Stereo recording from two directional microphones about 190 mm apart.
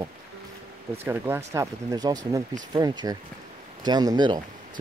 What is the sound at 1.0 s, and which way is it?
Speech, 10° right (ahead or behind).